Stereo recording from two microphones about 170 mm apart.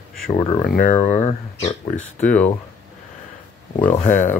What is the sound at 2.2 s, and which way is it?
Speech, 10° left (ahead or behind).